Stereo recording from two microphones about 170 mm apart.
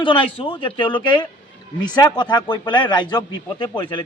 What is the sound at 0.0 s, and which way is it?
A man's voice, 30° left (ahead or behind).